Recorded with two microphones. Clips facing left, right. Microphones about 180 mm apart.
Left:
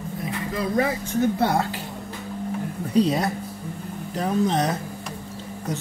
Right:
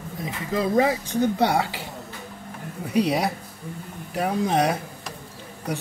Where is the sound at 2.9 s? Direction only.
10° right (ahead or behind).